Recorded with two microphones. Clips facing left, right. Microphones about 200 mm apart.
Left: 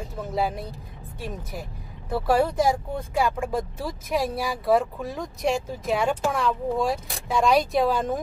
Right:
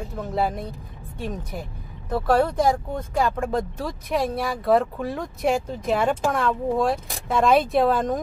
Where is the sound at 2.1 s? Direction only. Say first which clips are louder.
Right 2 dB; 10° left (ahead or behind).